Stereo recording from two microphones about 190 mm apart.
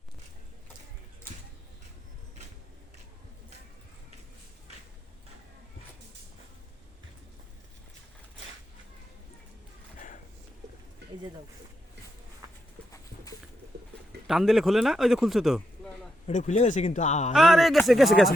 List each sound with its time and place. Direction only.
14.3 s speech: centre (ahead or behind)
16.2 s speech: 40° left (ahead or behind)
17.3 s speech: centre (ahead or behind)